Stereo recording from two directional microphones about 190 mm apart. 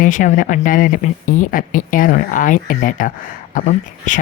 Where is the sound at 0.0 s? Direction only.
40° left (ahead or behind).